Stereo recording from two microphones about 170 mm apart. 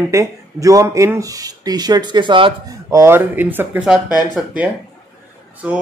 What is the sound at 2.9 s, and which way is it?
Speech, 15° right (ahead or behind).